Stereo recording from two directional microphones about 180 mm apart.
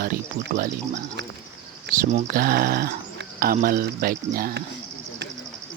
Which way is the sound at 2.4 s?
60° right (ahead or behind).